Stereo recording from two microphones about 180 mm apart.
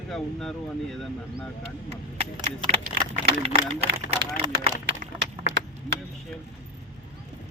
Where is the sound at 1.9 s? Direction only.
30° right (ahead or behind).